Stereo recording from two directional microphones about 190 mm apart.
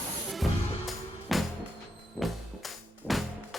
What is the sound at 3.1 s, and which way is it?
Music, centre (ahead or behind).